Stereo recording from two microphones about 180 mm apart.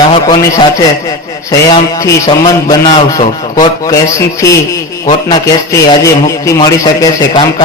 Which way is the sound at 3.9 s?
15° left (ahead or behind).